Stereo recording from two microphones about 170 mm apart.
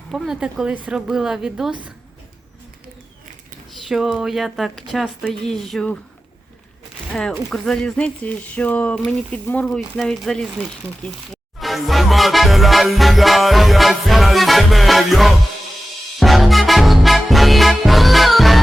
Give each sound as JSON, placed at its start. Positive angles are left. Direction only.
{"t": 0.1, "sound": "speech", "side_deg": 0}
{"t": 3.7, "sound": "speech", "side_deg": 0}
{"t": 7.1, "sound": "speech", "side_deg": 5}
{"t": 11.6, "sound": "music", "side_deg": 0}